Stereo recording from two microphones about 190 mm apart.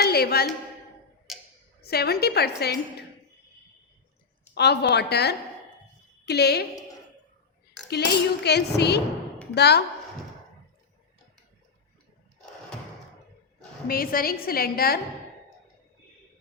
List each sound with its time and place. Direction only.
0.0 s a woman's voice: 55° left (ahead or behind)
1.3 s a sound: centre (ahead or behind)
1.8 s speech: 55° left (ahead or behind)
4.5 s speech: 60° left (ahead or behind)
7.9 s speech: 60° left (ahead or behind)
13.8 s a woman's voice: 50° left (ahead or behind)